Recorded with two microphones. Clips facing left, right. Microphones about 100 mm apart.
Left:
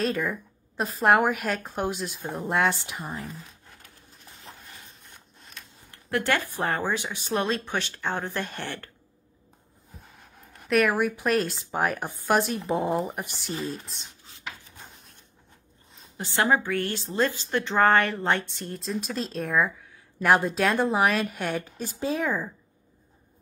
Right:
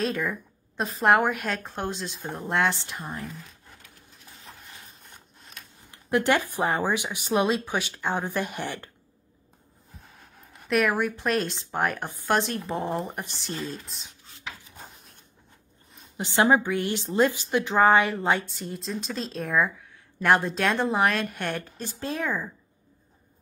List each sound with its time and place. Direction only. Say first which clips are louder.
0.0 s a woman's voice: left 1 dB; centre (ahead or behind)
4.5 s a sound: left 1 dB; centre (ahead or behind)
5.9 s speech: right 3 dB; 15° right (ahead or behind)
10.0 s a woman's voice: even; centre (ahead or behind)
13.2 s speech: left 1 dB; 10° left (ahead or behind)
16.2 s a woman's voice: right 3 dB; 20° right (ahead or behind); by 22.5 s 5° left (ahead or behind)